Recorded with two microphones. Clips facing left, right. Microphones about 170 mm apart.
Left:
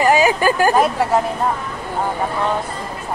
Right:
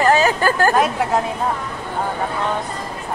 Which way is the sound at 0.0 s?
15° left (ahead or behind).